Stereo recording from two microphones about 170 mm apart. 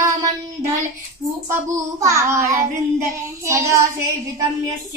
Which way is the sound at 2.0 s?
15° right (ahead or behind).